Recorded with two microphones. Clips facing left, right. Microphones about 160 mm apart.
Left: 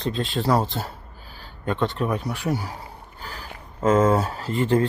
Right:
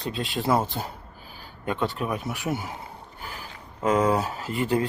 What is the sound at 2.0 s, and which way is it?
Speech, 10° right (ahead or behind).